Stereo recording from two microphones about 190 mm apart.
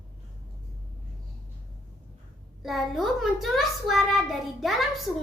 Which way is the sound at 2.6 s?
Centre (ahead or behind).